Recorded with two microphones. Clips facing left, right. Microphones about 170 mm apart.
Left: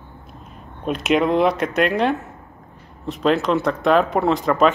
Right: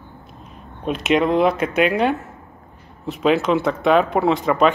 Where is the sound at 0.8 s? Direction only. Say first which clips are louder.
Even; centre (ahead or behind).